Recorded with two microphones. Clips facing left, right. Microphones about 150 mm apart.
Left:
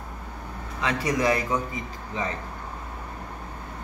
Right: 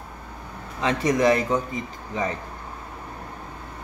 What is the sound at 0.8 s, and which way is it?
Speech, 25° right (ahead or behind).